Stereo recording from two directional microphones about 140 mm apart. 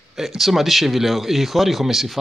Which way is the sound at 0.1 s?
Centre (ahead or behind).